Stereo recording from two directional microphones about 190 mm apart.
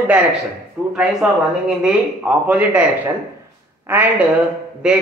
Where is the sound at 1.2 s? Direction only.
10° right (ahead or behind).